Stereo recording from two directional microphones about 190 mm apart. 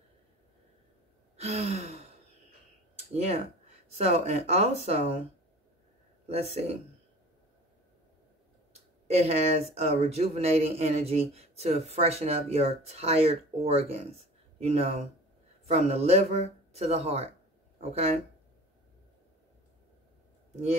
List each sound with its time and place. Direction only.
1.3 s gasp: 35° right (ahead or behind)
3.2 s speech: 35° right (ahead or behind)
6.2 s speech: 35° right (ahead or behind)
9.1 s speech: 35° right (ahead or behind)